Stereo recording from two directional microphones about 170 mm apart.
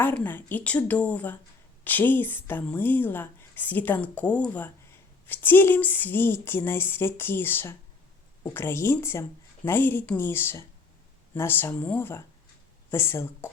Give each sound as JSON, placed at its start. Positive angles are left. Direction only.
{"t": 0.0, "sound": "speech", "side_deg": 10}